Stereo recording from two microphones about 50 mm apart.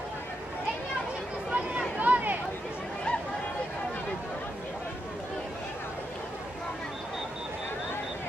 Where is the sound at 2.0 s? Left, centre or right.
Right.